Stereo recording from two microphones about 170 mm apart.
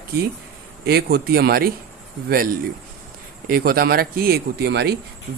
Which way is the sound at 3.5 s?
60° right (ahead or behind).